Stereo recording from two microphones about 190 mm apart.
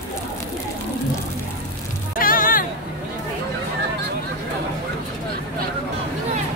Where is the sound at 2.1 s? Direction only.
50° left (ahead or behind).